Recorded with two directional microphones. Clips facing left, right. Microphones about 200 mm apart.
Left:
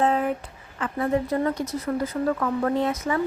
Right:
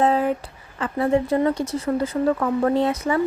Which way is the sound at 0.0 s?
35° right (ahead or behind).